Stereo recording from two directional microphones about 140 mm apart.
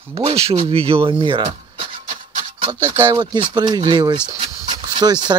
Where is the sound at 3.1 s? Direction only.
35° right (ahead or behind).